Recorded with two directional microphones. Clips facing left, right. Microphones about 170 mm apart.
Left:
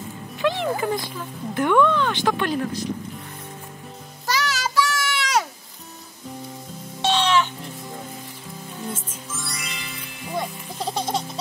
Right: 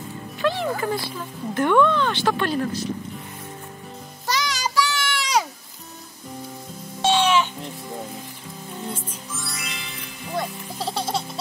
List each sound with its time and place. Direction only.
0.4 s speech: 15° left (ahead or behind)
4.3 s music: 5° left (ahead or behind)
7.0 s music: 10° right (ahead or behind)
8.8 s music: centre (ahead or behind)